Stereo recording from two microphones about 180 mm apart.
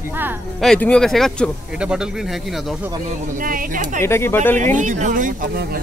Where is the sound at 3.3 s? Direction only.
50° right (ahead or behind).